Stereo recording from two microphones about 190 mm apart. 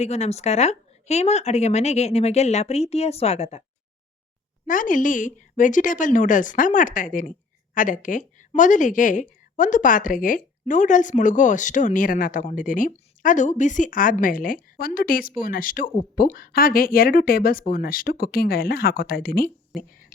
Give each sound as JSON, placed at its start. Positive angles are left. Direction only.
{"t": 0.0, "sound": "a woman's voice", "side_deg": 35}
{"t": 4.6, "sound": "a woman's voice", "side_deg": 45}